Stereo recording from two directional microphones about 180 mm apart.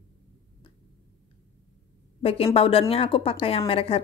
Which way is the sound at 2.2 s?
30° left (ahead or behind).